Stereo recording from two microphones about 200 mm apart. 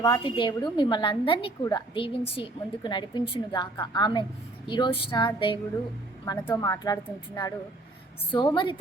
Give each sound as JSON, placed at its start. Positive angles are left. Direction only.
{"t": 0.0, "sound": "a woman's voice", "side_deg": 20}
{"t": 6.2, "sound": "a woman's voice", "side_deg": 15}